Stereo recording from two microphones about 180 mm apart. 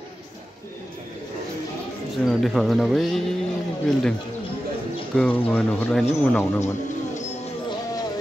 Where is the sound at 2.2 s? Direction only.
Centre (ahead or behind).